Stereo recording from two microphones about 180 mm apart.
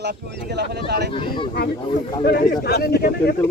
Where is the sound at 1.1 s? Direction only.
30° left (ahead or behind).